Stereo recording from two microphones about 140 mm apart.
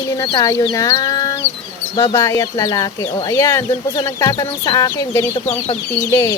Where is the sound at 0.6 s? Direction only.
25° left (ahead or behind).